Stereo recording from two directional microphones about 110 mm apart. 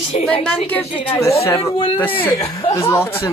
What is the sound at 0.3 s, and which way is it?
Speech, 5° left (ahead or behind).